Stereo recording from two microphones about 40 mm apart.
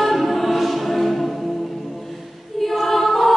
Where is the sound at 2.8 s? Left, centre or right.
Centre.